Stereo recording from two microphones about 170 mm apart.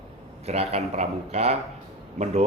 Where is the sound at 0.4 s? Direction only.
35° right (ahead or behind).